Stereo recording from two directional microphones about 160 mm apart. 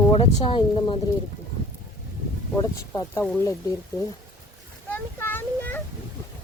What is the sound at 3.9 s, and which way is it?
Speech, 25° left (ahead or behind).